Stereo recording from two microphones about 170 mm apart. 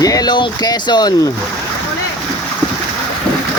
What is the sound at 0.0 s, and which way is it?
Speech, 20° left (ahead or behind).